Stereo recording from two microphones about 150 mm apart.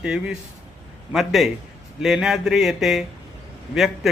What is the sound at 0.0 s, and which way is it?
Speech, 5° right (ahead or behind).